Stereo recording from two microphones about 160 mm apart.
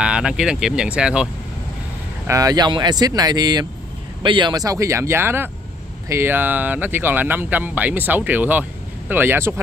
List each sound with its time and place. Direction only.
0.0 s speech: 5° right (ahead or behind)
2.2 s speech: 20° right (ahead or behind)